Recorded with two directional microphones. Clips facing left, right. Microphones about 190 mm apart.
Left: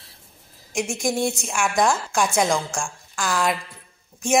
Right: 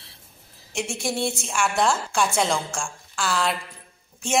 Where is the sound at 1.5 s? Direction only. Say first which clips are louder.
Left 1 dB; 10° left (ahead or behind).